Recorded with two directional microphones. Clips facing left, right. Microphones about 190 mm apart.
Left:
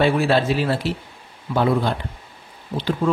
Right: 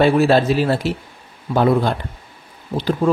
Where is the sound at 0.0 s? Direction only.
40° right (ahead or behind).